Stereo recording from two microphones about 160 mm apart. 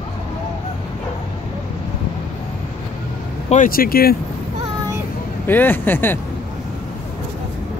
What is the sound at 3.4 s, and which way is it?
Speech, 55° left (ahead or behind).